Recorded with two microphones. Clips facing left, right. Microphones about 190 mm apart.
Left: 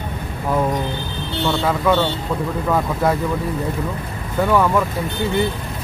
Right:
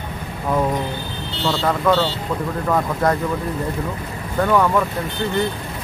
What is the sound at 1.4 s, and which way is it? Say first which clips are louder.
Speech: left 1 dB; 20° left (ahead or behind).